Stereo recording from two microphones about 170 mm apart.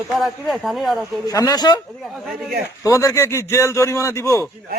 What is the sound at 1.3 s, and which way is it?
Speech, 20° left (ahead or behind).